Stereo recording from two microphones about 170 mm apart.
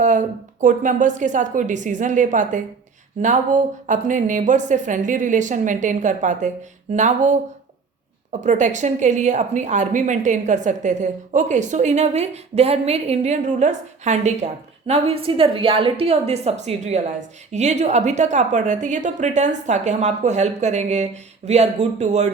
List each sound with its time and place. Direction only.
0.0 s a woman's voice: 45° right (ahead or behind)